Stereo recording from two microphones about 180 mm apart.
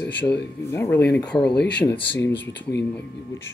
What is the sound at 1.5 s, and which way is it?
Speech, 70° left (ahead or behind).